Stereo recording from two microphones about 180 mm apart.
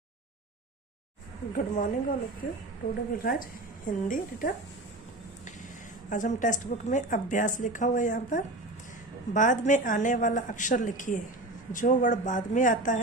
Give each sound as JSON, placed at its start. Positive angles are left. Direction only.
{"t": 1.5, "sound": "a woman's voice", "side_deg": 50}
{"t": 3.2, "sound": "a woman's voice", "side_deg": 50}
{"t": 6.0, "sound": "a woman's voice", "side_deg": 45}